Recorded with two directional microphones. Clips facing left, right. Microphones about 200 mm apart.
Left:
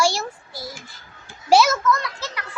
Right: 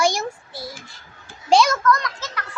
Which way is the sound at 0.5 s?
Centre (ahead or behind).